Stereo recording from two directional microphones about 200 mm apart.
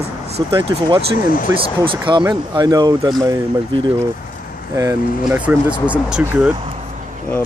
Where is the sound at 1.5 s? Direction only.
15° right (ahead or behind).